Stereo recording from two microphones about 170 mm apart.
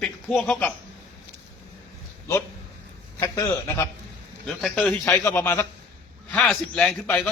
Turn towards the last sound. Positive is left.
turn(degrees=5)  # may be behind; listen again after turning